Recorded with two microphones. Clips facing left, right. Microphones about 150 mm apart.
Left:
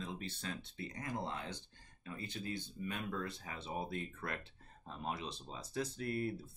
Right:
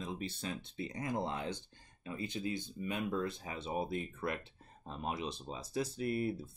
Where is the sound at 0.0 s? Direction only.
15° right (ahead or behind).